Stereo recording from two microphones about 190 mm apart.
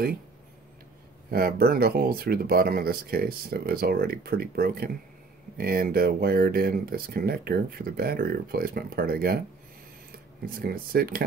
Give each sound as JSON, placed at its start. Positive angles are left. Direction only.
{"t": 1.3, "sound": "speech", "side_deg": -50}
{"t": 10.4, "sound": "speech", "side_deg": -50}